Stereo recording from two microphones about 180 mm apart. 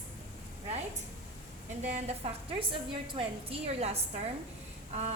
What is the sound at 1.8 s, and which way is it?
A woman's voice, 40° right (ahead or behind).